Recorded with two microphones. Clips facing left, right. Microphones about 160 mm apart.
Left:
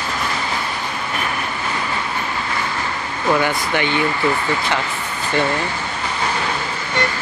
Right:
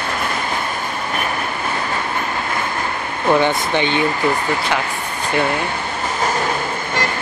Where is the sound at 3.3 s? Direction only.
20° right (ahead or behind).